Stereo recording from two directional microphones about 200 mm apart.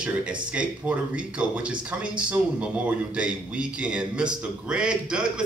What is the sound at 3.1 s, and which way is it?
Speech, 5° right (ahead or behind).